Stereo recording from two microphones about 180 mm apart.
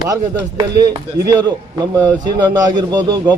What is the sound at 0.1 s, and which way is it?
A man's voice, 20° right (ahead or behind).